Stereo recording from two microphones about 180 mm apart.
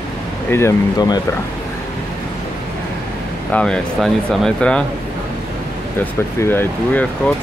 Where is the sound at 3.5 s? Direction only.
5° left (ahead or behind).